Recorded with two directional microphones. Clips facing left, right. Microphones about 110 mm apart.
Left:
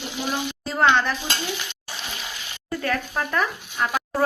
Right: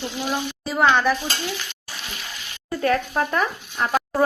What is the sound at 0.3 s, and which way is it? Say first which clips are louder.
Speech: even; centre (ahead or behind).